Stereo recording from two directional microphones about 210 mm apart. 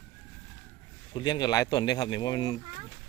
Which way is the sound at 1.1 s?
20° left (ahead or behind).